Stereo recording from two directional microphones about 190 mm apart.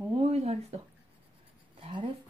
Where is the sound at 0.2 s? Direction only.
35° right (ahead or behind).